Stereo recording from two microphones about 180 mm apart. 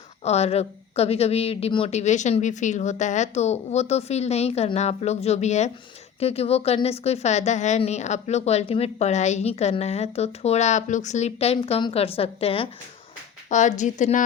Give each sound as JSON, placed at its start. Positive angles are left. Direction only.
{"t": 0.3, "sound": "a woman's voice", "side_deg": 35}